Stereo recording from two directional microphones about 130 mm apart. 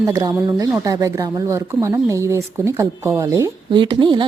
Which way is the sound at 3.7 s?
40° right (ahead or behind).